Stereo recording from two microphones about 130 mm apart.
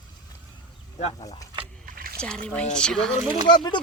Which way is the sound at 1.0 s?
50° left (ahead or behind).